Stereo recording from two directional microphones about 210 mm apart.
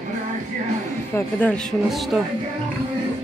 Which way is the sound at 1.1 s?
5° left (ahead or behind).